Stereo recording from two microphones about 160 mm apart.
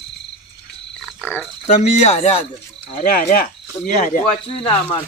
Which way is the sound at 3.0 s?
60° left (ahead or behind).